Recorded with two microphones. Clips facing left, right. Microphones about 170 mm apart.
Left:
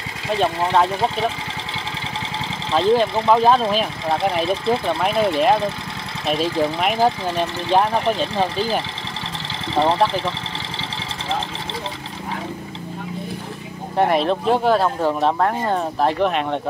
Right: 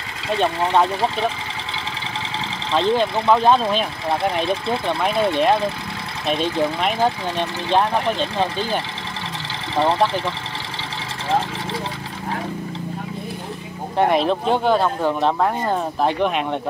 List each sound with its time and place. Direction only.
2.7 s speech: 5° left (ahead or behind)
13.9 s speech: centre (ahead or behind)